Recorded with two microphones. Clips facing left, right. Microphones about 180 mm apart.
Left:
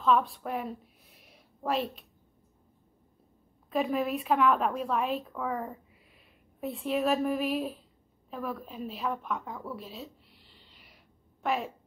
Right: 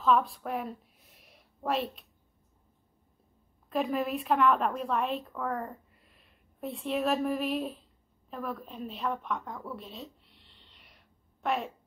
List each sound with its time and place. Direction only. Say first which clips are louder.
0.0 s speech: even; centre (ahead or behind)
3.7 s a woman's voice: left 1 dB; centre (ahead or behind)